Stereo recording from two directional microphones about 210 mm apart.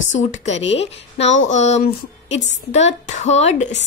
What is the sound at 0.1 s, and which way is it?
A woman's voice, 35° left (ahead or behind).